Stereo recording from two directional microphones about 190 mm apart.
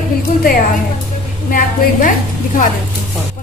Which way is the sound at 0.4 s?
50° left (ahead or behind).